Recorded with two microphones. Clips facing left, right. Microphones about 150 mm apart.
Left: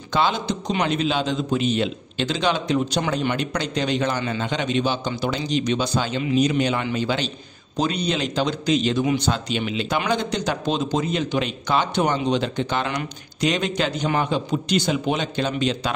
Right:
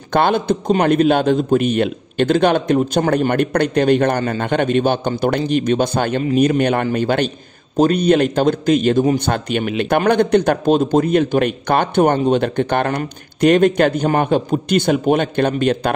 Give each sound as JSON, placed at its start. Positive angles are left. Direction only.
{"t": 0.1, "sound": "a man's voice", "side_deg": -55}